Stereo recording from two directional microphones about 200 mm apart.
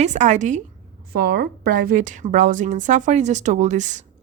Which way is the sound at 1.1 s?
50° right (ahead or behind).